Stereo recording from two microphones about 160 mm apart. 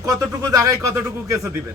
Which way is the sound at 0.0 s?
20° right (ahead or behind).